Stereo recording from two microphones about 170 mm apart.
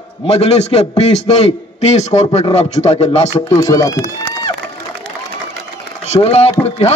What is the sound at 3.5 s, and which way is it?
Speech, 20° left (ahead or behind).